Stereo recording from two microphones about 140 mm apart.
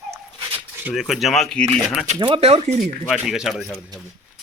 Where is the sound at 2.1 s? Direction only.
40° right (ahead or behind).